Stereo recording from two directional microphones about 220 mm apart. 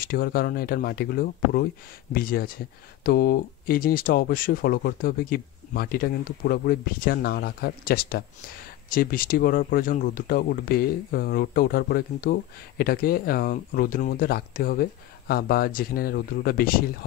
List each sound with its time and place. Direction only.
0.0 s speech: 40° left (ahead or behind)